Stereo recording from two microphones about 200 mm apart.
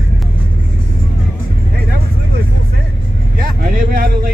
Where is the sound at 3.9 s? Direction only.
45° right (ahead or behind).